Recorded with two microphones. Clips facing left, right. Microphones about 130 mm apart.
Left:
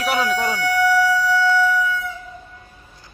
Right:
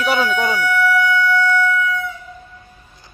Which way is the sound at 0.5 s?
35° left (ahead or behind).